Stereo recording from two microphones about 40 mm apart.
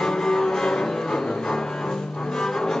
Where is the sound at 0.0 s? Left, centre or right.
Centre.